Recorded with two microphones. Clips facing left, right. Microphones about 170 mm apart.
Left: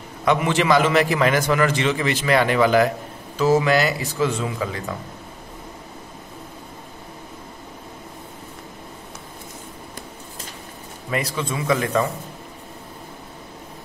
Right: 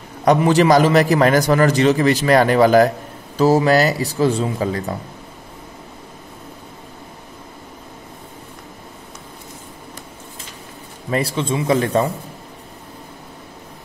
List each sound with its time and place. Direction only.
0.2 s a man's voice: 40° right (ahead or behind)
11.1 s a man's voice: 30° right (ahead or behind)